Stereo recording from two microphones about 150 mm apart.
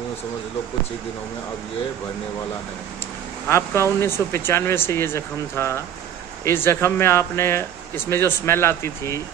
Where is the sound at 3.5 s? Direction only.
15° left (ahead or behind).